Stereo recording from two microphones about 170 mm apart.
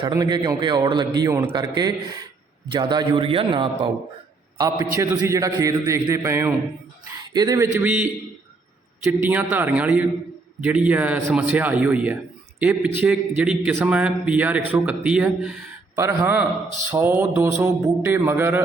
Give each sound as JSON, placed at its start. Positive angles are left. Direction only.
{"t": 0.1, "sound": "a man's voice", "side_deg": -20}
{"t": 9.2, "sound": "a man's voice", "side_deg": -10}